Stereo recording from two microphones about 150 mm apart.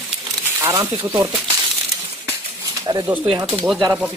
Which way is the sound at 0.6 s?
20° right (ahead or behind).